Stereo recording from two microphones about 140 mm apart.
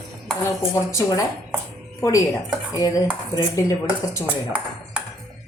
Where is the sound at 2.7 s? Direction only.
25° left (ahead or behind).